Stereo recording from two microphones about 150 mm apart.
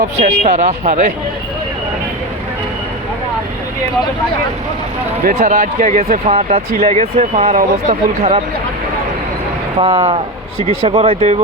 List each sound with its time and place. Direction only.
0.2 s speech: 55° right (ahead or behind)
5.3 s speech: 50° right (ahead or behind)
9.8 s speech: 35° right (ahead or behind)